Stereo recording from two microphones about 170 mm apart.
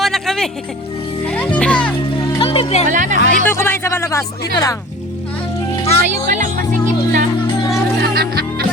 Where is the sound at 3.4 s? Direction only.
15° left (ahead or behind).